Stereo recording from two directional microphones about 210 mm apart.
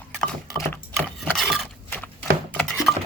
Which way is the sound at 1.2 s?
Centre (ahead or behind).